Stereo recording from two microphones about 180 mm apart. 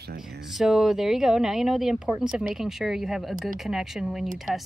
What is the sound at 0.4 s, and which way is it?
Speech, centre (ahead or behind).